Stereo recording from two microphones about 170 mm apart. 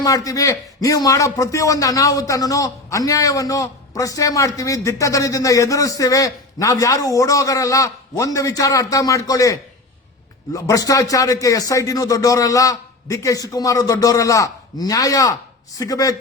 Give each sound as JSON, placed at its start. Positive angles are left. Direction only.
{"t": 0.0, "sound": "a man's voice", "side_deg": 20}